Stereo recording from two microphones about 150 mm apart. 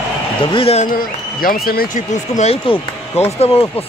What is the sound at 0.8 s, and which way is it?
A man's voice, 70° left (ahead or behind).